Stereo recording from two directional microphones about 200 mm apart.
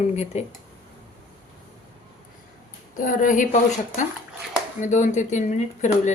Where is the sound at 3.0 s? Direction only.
40° left (ahead or behind).